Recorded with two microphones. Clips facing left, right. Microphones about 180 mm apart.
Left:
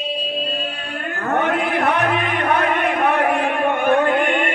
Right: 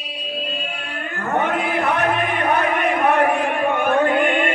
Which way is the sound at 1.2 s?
65° left (ahead or behind).